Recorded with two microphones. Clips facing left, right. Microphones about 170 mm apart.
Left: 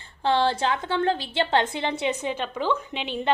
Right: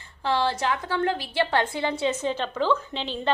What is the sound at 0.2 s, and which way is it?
A woman's voice, 25° left (ahead or behind).